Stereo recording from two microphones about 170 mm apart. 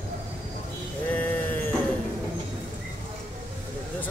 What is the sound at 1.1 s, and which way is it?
Sheep, 10° left (ahead or behind).